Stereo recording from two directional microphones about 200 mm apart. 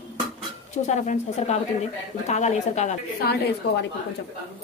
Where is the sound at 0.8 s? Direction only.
35° left (ahead or behind).